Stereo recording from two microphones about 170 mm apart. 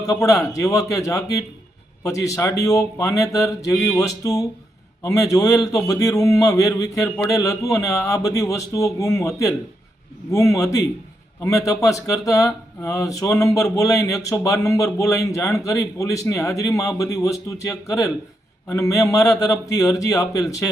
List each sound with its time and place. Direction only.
0.0 s a man's voice: 20° left (ahead or behind)